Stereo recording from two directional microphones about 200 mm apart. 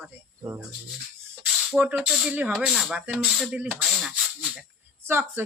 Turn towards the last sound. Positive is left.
turn(degrees=-10)  # may be behind; listen again after turning